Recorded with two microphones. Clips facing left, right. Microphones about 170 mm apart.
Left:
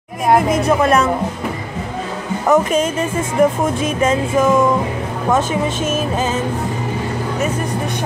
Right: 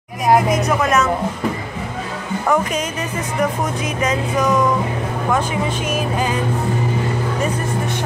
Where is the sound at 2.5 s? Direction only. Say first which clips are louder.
Left 5 dB; 25° left (ahead or behind).